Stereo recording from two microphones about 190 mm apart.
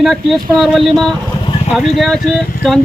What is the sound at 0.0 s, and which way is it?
A woman's voice, centre (ahead or behind).